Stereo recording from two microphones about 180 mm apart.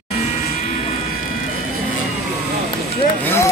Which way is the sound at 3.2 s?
15° left (ahead or behind).